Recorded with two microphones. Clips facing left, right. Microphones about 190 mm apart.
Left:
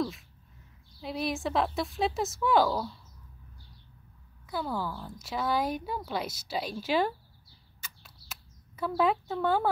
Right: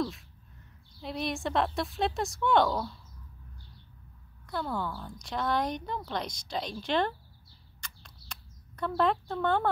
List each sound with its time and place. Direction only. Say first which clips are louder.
1.0 s speech: left 1 dB; centre (ahead or behind)
4.5 s speech: even; 5° left (ahead or behind)
7.8 s a sound: right 1 dB; 5° left (ahead or behind)